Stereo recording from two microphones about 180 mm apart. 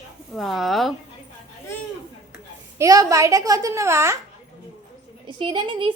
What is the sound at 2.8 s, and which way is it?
A child's voice, 20° right (ahead or behind).